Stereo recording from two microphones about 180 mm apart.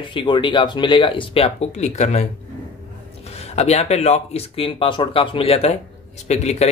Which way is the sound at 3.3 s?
35° left (ahead or behind).